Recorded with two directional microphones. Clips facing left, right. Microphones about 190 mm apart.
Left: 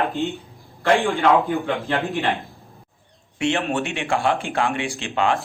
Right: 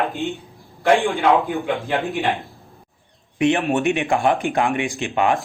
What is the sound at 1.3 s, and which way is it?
Speech, centre (ahead or behind).